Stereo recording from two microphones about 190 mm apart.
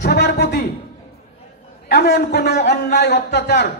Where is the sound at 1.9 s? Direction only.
55° left (ahead or behind).